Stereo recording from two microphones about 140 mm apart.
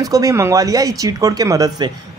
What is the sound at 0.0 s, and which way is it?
Speech, 25° right (ahead or behind).